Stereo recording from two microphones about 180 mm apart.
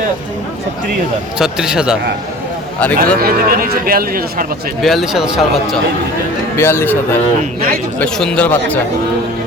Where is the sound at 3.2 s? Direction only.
55° right (ahead or behind).